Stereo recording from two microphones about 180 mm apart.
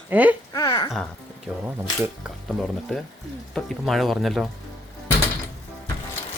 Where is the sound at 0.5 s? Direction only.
15° left (ahead or behind).